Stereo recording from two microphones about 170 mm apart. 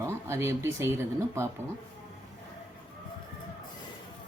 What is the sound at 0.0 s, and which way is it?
Speech, 15° right (ahead or behind).